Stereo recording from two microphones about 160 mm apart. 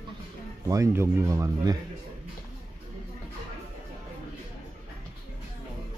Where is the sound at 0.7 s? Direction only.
15° right (ahead or behind).